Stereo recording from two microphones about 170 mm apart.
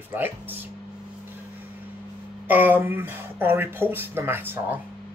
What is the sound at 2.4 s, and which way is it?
Speech, 10° right (ahead or behind).